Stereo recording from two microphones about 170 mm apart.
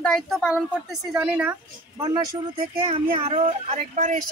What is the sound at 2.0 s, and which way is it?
Speech, 20° right (ahead or behind).